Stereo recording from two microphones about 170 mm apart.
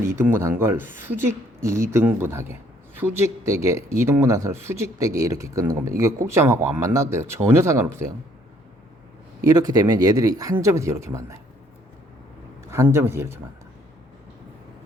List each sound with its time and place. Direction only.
0.3 s speech: 15° right (ahead or behind)
9.5 s speech: 25° right (ahead or behind)
12.7 s speech: 15° right (ahead or behind)